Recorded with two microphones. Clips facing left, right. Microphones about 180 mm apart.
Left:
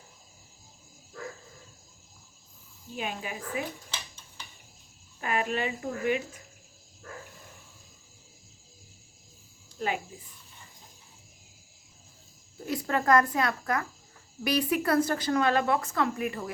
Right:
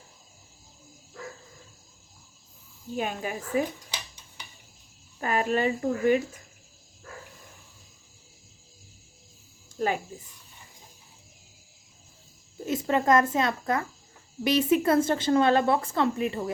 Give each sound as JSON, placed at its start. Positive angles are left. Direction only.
{"t": 2.9, "sound": "speech", "side_deg": -45}
{"t": 3.9, "sound": "a sound", "side_deg": -15}
{"t": 5.2, "sound": "speech", "side_deg": -40}
{"t": 9.7, "sound": "speech", "side_deg": -45}
{"t": 12.6, "sound": "speech", "side_deg": -20}